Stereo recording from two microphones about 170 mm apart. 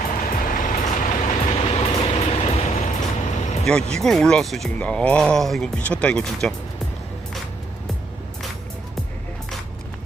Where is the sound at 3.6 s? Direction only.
5° left (ahead or behind).